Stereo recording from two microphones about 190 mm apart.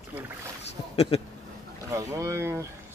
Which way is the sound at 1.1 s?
35° left (ahead or behind).